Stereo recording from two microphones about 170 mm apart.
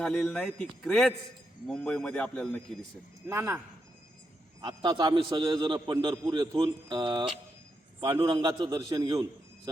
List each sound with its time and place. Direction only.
0.0 s a man's voice: 5° left (ahead or behind)
3.2 s speech: 15° right (ahead or behind)
4.6 s a man's voice: 25° right (ahead or behind)